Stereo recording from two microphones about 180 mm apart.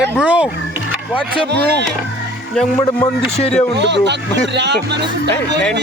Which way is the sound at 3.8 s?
75° right (ahead or behind).